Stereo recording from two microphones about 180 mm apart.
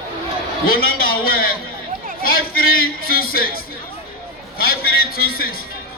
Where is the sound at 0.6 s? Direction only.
55° left (ahead or behind).